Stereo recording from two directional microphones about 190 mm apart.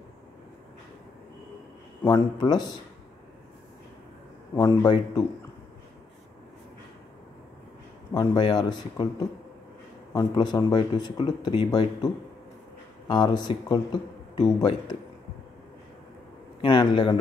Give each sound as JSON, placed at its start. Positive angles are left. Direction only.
{"t": 2.1, "sound": "speech", "side_deg": 20}
{"t": 4.6, "sound": "speech", "side_deg": 20}
{"t": 8.1, "sound": "speech", "side_deg": 25}
{"t": 10.1, "sound": "speech", "side_deg": 20}
{"t": 13.1, "sound": "speech", "side_deg": 25}
{"t": 16.6, "sound": "speech", "side_deg": 25}